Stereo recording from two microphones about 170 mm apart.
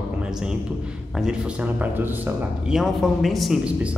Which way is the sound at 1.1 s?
5° right (ahead or behind).